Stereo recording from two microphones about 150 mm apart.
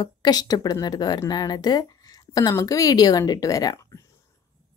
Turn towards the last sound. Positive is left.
turn(degrees=20)  # may be behind; listen again after turning